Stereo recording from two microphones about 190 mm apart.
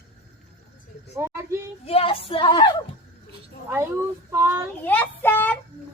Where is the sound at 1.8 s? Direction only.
30° left (ahead or behind).